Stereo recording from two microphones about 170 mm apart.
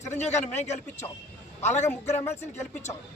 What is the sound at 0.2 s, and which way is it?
A man's voice, 40° left (ahead or behind).